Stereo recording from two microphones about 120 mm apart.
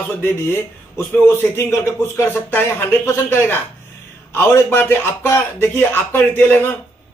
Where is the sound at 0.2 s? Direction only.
15° left (ahead or behind).